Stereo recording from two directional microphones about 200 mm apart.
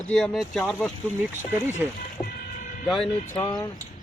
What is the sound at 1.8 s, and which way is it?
Speech, 5° right (ahead or behind).